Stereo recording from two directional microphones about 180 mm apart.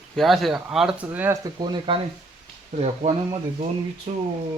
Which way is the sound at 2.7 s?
35° right (ahead or behind).